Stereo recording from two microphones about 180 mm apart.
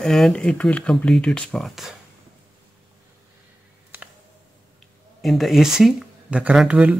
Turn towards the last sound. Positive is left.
turn(degrees=-5)  # may be behind; listen again after turning